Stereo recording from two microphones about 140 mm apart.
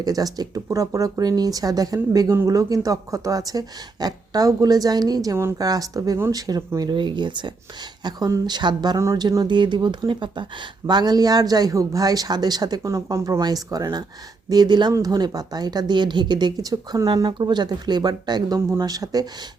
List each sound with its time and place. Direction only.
0.0 s speech: 25° right (ahead or behind)